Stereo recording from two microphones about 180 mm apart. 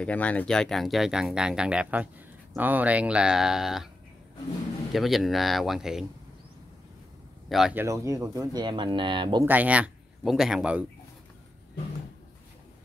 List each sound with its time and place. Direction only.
0.0 s speech: 5° left (ahead or behind)
4.9 s speech: centre (ahead or behind)
7.4 s speech: centre (ahead or behind)
7.7 s speech: 15° right (ahead or behind)
9.5 s speech: 10° right (ahead or behind)